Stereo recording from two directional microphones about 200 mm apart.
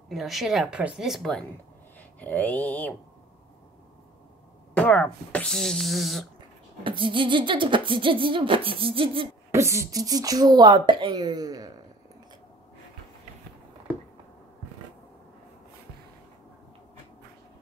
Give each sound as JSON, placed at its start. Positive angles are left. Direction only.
{"t": 0.1, "sound": "speech", "side_deg": 0}
{"t": 4.7, "sound": "speech", "side_deg": 5}
{"t": 6.8, "sound": "beatboxing", "side_deg": -25}
{"t": 9.5, "sound": "beatboxing", "side_deg": -15}